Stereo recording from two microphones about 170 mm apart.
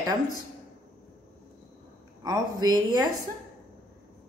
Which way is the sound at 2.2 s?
20° right (ahead or behind).